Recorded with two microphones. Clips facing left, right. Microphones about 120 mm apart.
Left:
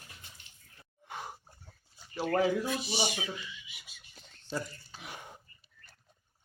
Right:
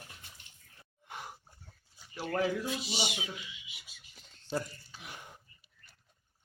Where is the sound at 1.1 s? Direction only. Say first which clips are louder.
Left 3 dB; 25° left (ahead or behind).